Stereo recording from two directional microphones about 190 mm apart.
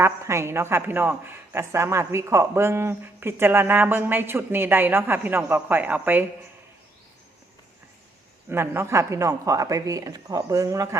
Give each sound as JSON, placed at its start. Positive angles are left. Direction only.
{"t": 0.0, "sound": "a woman's voice", "side_deg": -15}
{"t": 8.4, "sound": "a woman's voice", "side_deg": -10}